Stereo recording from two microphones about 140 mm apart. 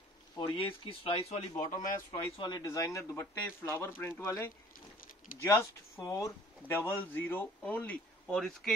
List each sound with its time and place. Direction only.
0.6 s speech: 40° left (ahead or behind)
1.7 s speech: 75° left (ahead or behind)
2.3 s speech: 35° left (ahead or behind)
2.6 s speech: 25° left (ahead or behind); by 8.7 s 5° left (ahead or behind)